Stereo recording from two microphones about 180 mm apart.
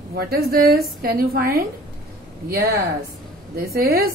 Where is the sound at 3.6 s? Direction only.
55° right (ahead or behind).